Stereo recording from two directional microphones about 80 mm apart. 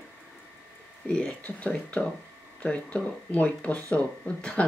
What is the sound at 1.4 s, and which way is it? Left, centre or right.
Speech, centre.